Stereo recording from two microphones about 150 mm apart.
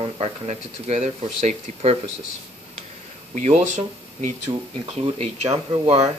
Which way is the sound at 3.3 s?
50° right (ahead or behind).